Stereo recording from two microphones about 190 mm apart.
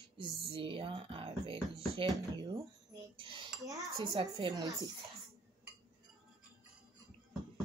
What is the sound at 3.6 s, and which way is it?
Speech, 15° right (ahead or behind).